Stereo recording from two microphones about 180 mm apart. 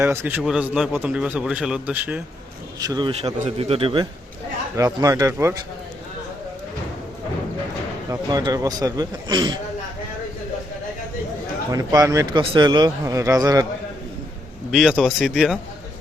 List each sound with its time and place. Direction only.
0.0 s a man's voice: 15° right (ahead or behind)
2.8 s speech: 20° right (ahead or behind)
3.1 s a man's voice: 35° right (ahead or behind)
4.8 s speech: 20° right (ahead or behind)
8.1 s speech: 20° right (ahead or behind)
11.7 s speech: 20° right (ahead or behind)
14.7 s speech: 5° right (ahead or behind)